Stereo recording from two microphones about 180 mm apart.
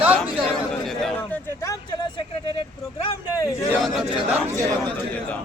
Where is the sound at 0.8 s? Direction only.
5° left (ahead or behind).